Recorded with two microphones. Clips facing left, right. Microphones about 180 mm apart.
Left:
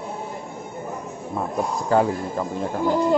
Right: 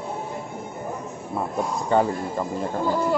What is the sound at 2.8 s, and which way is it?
Speech, 15° left (ahead or behind).